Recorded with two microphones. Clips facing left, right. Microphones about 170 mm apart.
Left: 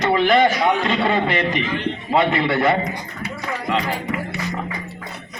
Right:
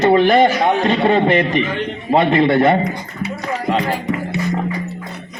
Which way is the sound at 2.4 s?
25° right (ahead or behind).